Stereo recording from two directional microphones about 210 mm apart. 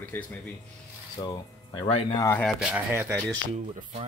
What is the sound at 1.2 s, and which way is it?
Speech, 25° left (ahead or behind).